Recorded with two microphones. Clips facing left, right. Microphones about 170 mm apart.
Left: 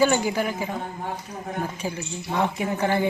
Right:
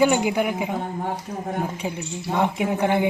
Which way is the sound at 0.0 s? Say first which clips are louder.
Right 2 dB; 15° right (ahead or behind).